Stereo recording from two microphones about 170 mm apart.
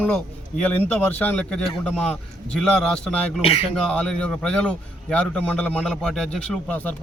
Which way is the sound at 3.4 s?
35° left (ahead or behind).